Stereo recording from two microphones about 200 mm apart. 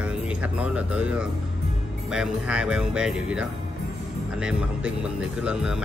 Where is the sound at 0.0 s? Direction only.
5° right (ahead or behind).